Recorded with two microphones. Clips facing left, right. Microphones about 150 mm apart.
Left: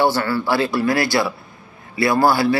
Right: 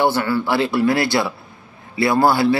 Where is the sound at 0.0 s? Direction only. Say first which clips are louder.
Even; 15° right (ahead or behind).